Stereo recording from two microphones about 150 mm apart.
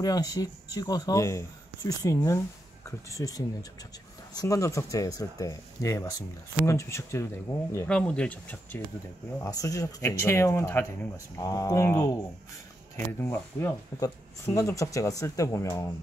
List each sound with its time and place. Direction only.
0.0 s speech: 25° left (ahead or behind)
7.9 s speech: 5° left (ahead or behind)
9.4 s speech: 25° left (ahead or behind)